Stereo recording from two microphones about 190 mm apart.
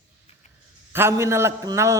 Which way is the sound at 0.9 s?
15° right (ahead or behind).